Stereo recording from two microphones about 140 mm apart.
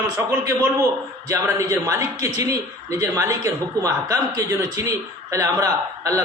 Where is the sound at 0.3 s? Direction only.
20° right (ahead or behind).